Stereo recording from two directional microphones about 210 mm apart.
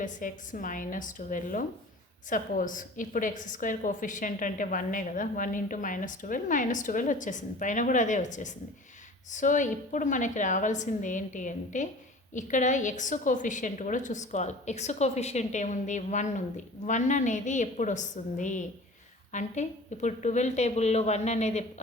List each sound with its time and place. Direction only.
0.0 s a woman's voice: 40° left (ahead or behind)